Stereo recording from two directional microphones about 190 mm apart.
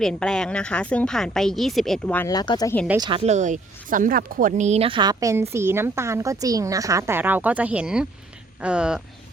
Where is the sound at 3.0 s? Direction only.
30° right (ahead or behind); by 9.0 s 5° right (ahead or behind).